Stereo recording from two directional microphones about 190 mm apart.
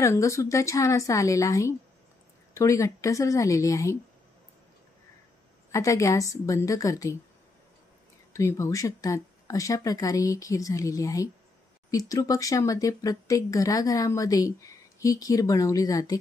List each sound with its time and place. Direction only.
0.0 s speech: 15° left (ahead or behind)
5.7 s speech: 15° left (ahead or behind)
8.3 s speech: 15° left (ahead or behind)